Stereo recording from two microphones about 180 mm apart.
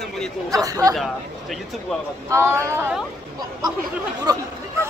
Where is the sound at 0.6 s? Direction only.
20° right (ahead or behind).